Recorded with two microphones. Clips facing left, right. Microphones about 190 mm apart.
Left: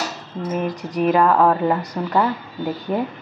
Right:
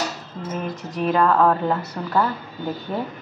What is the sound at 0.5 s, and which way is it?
Speech, 10° left (ahead or behind).